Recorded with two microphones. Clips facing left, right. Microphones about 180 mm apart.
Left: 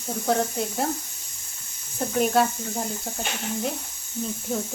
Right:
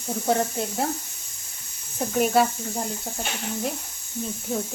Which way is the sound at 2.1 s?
5° right (ahead or behind).